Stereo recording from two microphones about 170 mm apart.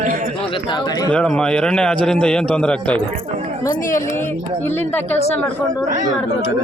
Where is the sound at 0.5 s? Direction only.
25° left (ahead or behind).